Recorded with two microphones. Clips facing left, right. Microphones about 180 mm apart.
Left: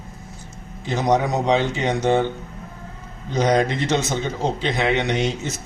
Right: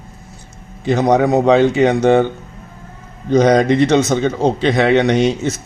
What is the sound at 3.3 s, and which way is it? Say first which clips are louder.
A man's voice: right 8 dB; 70° right (ahead or behind).